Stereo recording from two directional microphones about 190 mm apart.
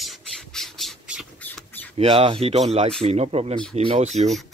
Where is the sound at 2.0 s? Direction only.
30° right (ahead or behind).